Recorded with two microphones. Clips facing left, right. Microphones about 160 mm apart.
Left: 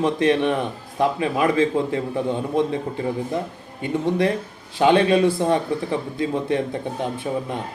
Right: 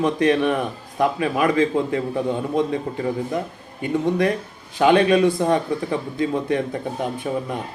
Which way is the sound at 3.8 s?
25° left (ahead or behind).